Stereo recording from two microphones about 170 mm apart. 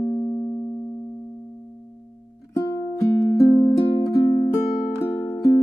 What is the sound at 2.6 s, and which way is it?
Music, 25° left (ahead or behind).